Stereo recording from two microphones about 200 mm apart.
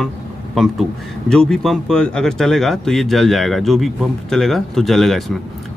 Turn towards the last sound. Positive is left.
turn(degrees=0)  # may be behind; listen again after turning